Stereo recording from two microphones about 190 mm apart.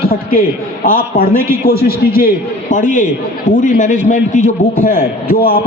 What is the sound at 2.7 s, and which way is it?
A man's voice, 40° left (ahead or behind).